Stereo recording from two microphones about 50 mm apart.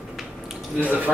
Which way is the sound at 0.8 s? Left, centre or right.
Right.